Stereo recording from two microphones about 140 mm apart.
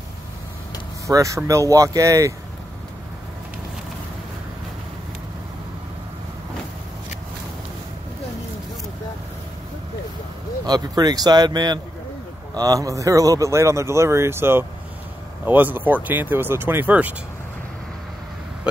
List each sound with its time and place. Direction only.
1.0 s speech: 20° right (ahead or behind)
10.6 s speech: 30° right (ahead or behind); by 17.1 s 10° right (ahead or behind)